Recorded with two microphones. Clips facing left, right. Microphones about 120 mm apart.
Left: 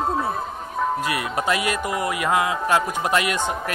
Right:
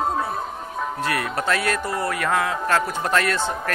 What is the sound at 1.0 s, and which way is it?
Speech, 10° left (ahead or behind).